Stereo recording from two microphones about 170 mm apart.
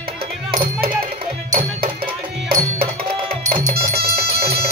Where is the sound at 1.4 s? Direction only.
55° right (ahead or behind).